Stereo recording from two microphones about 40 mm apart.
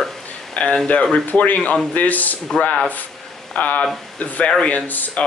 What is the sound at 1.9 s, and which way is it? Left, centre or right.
Speech, left.